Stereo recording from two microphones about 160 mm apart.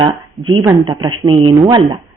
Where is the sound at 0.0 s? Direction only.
30° right (ahead or behind).